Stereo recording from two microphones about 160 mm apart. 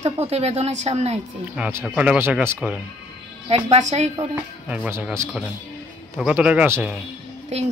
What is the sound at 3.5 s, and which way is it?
Speech, 45° right (ahead or behind).